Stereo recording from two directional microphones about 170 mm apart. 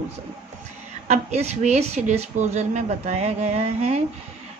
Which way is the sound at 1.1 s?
40° right (ahead or behind).